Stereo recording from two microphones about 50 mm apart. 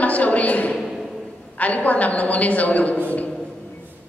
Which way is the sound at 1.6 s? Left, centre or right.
Left.